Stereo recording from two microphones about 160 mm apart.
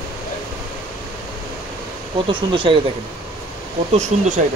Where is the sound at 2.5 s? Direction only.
30° right (ahead or behind).